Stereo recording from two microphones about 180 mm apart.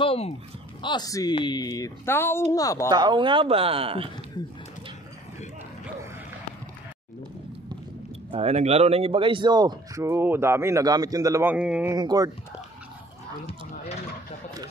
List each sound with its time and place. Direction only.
0.0 s speech: 30° left (ahead or behind)
0.8 s speech: 20° left (ahead or behind)
2.9 s speech: 25° right (ahead or behind)
8.3 s speech: 35° right (ahead or behind); by 11.9 s 5° right (ahead or behind)
11.9 s speech: 20° right (ahead or behind)